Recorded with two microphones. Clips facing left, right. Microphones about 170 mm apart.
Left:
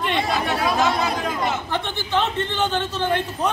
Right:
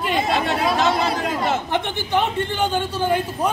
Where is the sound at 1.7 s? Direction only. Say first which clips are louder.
Right 2 dB; 10° right (ahead or behind).